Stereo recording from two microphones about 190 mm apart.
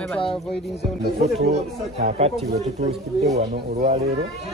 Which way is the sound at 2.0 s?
35° right (ahead or behind).